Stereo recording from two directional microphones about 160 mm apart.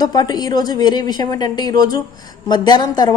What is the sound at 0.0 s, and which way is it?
Speech, 25° left (ahead or behind).